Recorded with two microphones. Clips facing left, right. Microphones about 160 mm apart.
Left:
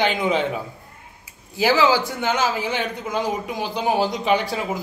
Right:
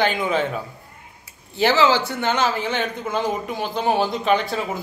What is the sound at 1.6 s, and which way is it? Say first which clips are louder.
A man's voice: even; 10° left (ahead or behind).